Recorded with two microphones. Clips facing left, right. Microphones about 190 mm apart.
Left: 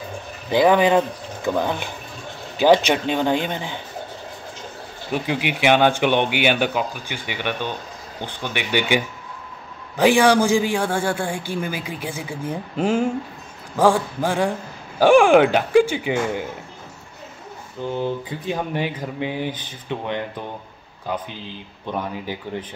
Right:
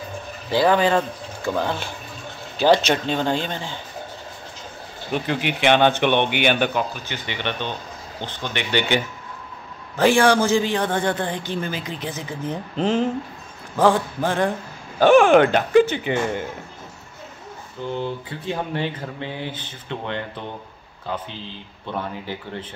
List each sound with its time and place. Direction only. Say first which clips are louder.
0.5 s a man's voice: left 2 dB; 15° left (ahead or behind)
5.1 s a man's voice: even; 10° left (ahead or behind)
17.9 s a man's voice: left 3 dB; 15° left (ahead or behind)